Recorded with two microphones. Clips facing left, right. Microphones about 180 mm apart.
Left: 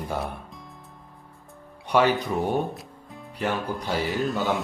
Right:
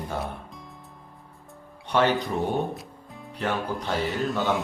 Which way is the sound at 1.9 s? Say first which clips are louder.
Left 2 dB; 10° left (ahead or behind).